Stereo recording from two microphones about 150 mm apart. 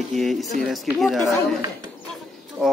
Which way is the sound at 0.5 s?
65° right (ahead or behind).